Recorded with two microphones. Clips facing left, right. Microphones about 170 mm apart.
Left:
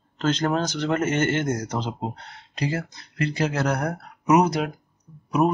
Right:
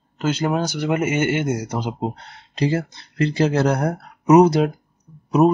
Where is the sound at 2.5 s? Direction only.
30° right (ahead or behind).